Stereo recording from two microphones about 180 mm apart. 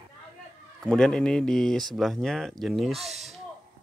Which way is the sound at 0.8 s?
5° left (ahead or behind).